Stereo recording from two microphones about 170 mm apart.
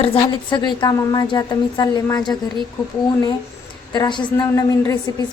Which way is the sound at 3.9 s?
25° left (ahead or behind).